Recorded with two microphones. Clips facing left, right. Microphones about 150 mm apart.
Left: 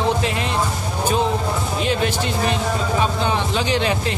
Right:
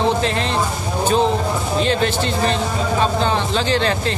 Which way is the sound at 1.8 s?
10° left (ahead or behind).